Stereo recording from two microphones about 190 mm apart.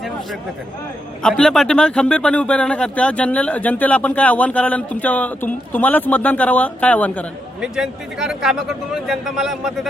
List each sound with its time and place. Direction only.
1.2 s a man's voice: 5° left (ahead or behind)
7.6 s a man's voice: centre (ahead or behind)